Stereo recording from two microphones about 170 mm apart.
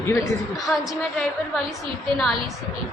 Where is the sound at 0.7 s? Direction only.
Centre (ahead or behind).